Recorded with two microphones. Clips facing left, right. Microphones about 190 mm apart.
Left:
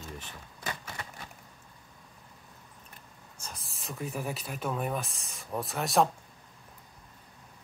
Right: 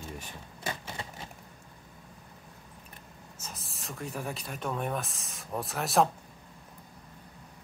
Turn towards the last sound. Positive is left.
turn(degrees=0)  # may be behind; listen again after turning